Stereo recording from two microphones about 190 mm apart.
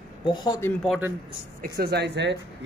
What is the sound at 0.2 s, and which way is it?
Speech, 25° left (ahead or behind).